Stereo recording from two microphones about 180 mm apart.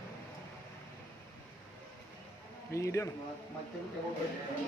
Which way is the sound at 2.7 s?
15° left (ahead or behind).